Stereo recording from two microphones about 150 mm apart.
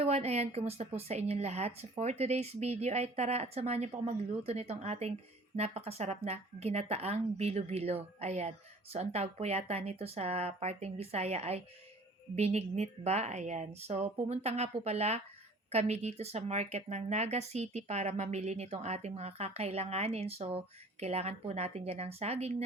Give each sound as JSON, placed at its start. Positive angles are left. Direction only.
{"t": 0.0, "sound": "speech", "side_deg": -45}